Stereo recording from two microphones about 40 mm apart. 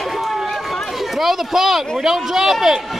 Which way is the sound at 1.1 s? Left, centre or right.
Centre.